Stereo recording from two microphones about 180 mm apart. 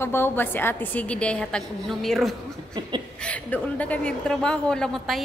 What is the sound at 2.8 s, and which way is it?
Speech, 25° right (ahead or behind).